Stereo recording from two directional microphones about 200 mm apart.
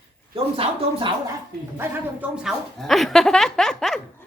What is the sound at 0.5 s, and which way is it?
Speech, 25° right (ahead or behind).